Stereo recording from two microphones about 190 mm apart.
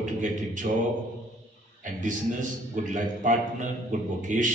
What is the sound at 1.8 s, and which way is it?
A man's voice, 45° right (ahead or behind).